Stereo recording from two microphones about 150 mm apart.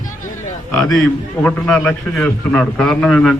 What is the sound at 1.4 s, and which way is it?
A man's voice, 10° left (ahead or behind).